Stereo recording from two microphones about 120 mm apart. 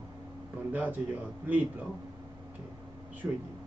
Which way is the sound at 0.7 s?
15° right (ahead or behind).